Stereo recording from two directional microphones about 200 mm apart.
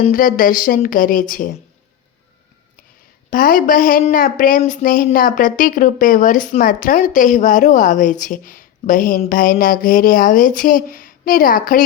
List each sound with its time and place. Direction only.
0.1 s speech: 45° left (ahead or behind)
3.2 s speech: 45° left (ahead or behind)